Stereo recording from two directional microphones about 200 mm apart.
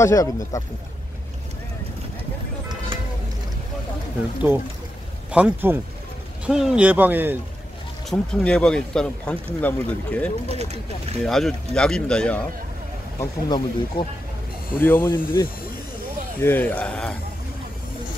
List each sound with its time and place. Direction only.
0.0 s speech: 15° left (ahead or behind)
5.3 s speech: 10° right (ahead or behind)
8.1 s speech: 5° left (ahead or behind)
10.5 s speech: 30° right (ahead or behind)
11.2 s speech: centre (ahead or behind)
13.2 s speech: 20° left (ahead or behind)
14.8 s speech: 10° left (ahead or behind)